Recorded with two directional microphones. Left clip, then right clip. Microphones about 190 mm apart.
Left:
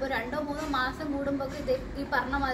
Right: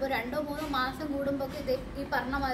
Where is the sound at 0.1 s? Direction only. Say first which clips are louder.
Left 1 dB; 20° right (ahead or behind).